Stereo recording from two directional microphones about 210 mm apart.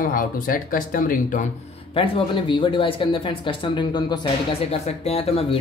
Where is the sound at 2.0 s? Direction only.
25° left (ahead or behind).